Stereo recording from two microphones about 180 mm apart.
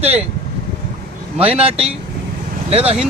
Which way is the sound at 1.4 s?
35° right (ahead or behind).